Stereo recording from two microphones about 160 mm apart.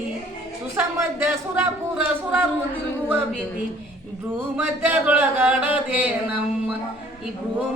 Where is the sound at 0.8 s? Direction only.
15° right (ahead or behind).